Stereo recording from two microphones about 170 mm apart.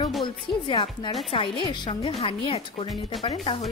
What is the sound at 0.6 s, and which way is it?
A woman's voice, 30° left (ahead or behind).